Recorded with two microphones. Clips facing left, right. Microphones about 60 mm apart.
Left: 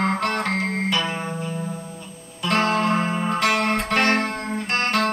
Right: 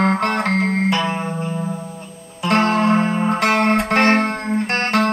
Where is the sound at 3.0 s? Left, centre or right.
Centre.